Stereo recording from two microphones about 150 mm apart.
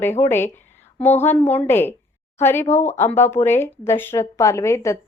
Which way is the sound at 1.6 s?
15° left (ahead or behind).